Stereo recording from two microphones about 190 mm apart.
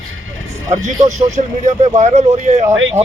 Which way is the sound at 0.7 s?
40° right (ahead or behind).